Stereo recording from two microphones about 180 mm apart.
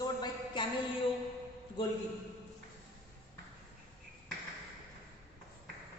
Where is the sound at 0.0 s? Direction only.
25° left (ahead or behind).